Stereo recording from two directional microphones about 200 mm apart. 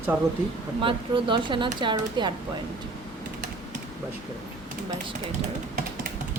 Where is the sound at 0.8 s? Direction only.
25° right (ahead or behind).